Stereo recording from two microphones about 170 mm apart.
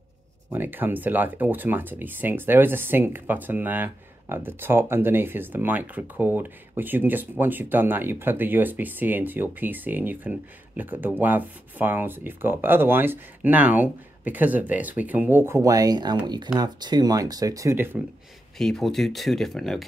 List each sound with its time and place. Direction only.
0.5 s speech: 10° right (ahead or behind)
18.6 s speech: centre (ahead or behind)